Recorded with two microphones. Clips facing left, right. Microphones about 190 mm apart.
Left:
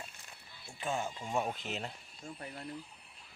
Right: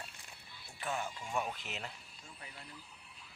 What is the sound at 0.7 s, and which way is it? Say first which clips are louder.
Speech: left 3 dB; 15° left (ahead or behind).